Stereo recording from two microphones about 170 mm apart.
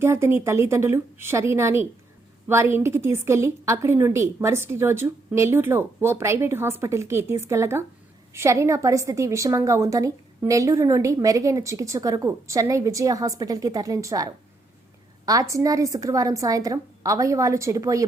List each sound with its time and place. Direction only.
0.0 s a woman's voice: 15° right (ahead or behind)